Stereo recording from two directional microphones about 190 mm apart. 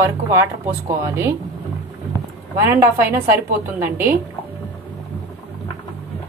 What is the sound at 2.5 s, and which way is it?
A woman's voice, 10° right (ahead or behind).